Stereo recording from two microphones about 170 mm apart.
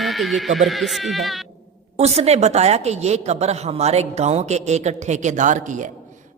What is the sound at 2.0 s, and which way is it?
A woman's voice, 40° right (ahead or behind).